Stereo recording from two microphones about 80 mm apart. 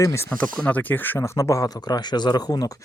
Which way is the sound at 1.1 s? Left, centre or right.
Left.